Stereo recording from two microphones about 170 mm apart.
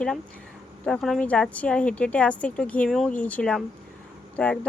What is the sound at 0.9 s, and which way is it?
Speech, centre (ahead or behind).